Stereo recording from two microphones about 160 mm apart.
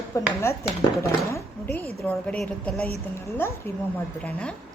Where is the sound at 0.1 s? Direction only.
20° left (ahead or behind); by 2.8 s 5° left (ahead or behind).